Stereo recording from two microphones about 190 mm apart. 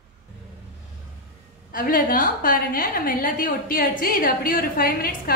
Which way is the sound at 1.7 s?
50° left (ahead or behind).